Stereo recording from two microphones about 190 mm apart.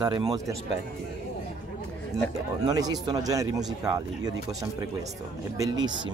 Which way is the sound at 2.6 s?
20° right (ahead or behind).